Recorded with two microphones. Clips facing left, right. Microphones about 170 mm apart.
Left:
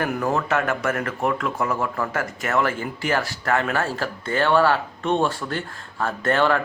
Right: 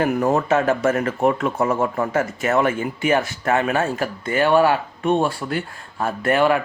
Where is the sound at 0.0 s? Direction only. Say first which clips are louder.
Right 5 dB; 25° right (ahead or behind).